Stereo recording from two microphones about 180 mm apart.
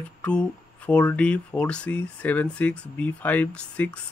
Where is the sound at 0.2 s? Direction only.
5° left (ahead or behind).